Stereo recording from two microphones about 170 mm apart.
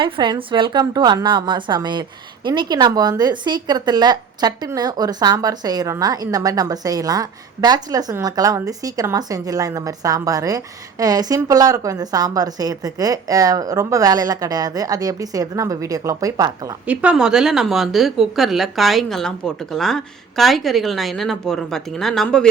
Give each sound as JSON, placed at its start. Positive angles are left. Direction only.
{"t": 0.0, "sound": "a woman's voice", "side_deg": -30}
{"t": 16.8, "sound": "a woman's voice", "side_deg": -10}